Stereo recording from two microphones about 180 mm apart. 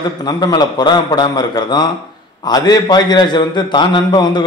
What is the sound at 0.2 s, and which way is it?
A man's voice, 20° left (ahead or behind).